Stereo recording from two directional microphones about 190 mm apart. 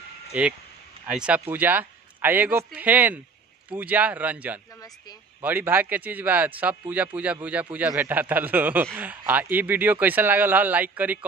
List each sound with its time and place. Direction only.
0.3 s speech: 5° right (ahead or behind)
4.7 s speech: 20° left (ahead or behind)
5.4 s speech: 10° right (ahead or behind)